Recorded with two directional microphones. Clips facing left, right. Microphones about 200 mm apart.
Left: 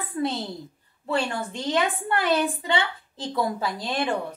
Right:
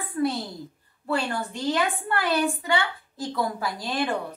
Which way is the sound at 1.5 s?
20° left (ahead or behind).